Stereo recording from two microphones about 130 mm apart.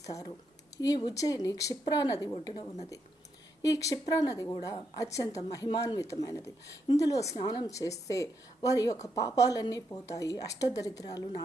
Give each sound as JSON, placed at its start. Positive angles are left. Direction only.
{"t": 0.0, "sound": "a woman's voice", "side_deg": 25}